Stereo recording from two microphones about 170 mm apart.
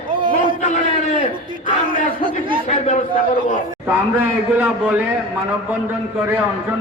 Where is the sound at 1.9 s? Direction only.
30° right (ahead or behind).